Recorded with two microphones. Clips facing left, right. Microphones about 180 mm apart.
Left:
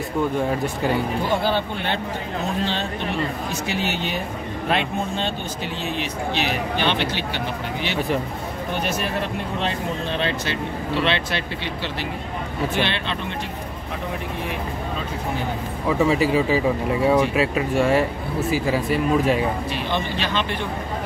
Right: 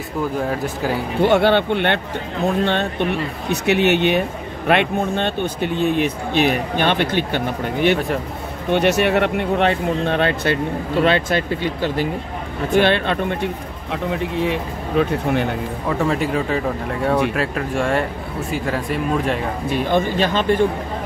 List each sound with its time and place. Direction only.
0.5 s speech: centre (ahead or behind)
1.2 s speech: 70° right (ahead or behind); by 8.0 s 55° right (ahead or behind)
8.7 s speech: 70° right (ahead or behind); by 13.5 s 50° right (ahead or behind)
14.1 s speech: 75° right (ahead or behind)
15.9 s speech: centre (ahead or behind)
19.7 s speech: 45° right (ahead or behind)